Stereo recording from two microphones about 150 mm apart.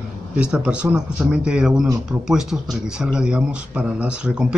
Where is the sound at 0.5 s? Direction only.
10° right (ahead or behind).